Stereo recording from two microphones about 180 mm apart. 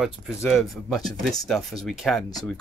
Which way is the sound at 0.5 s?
Centre (ahead or behind).